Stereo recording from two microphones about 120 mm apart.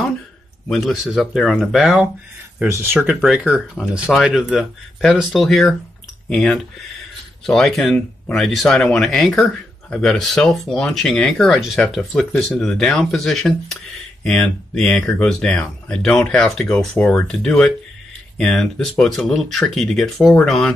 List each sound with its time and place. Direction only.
0.7 s speech: centre (ahead or behind)
2.7 s speech: 20° right (ahead or behind); by 20.7 s 5° left (ahead or behind)